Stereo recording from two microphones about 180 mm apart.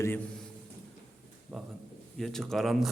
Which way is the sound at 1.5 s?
Centre (ahead or behind).